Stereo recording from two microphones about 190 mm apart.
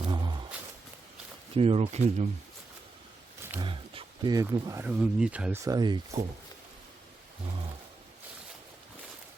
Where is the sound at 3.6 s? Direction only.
25° right (ahead or behind); by 5.6 s 5° right (ahead or behind).